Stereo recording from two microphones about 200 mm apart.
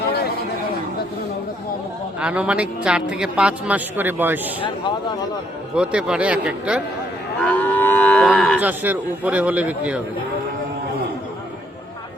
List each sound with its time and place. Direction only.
2.2 s a man's voice: 5° right (ahead or behind)
5.7 s a man's voice: 5° right (ahead or behind)
7.4 s moo: 10° left (ahead or behind)
8.6 s a man's voice: 10° right (ahead or behind)